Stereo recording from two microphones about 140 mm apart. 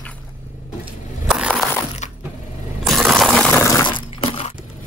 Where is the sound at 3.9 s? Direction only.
40° left (ahead or behind).